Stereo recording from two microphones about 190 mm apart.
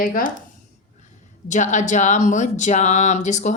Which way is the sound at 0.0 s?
45° left (ahead or behind).